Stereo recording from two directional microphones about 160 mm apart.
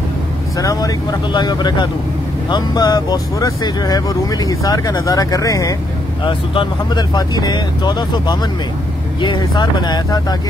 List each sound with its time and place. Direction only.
0.6 s speech: 20° left (ahead or behind)